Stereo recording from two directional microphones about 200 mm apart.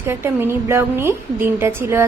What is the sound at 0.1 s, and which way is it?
A woman's voice, 10° right (ahead or behind).